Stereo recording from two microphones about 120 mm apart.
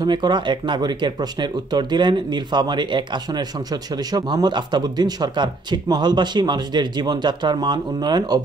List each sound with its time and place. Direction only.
0.0 s speech: 40° right (ahead or behind)